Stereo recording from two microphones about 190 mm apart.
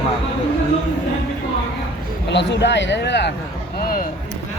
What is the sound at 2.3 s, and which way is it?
Speech, 65° left (ahead or behind).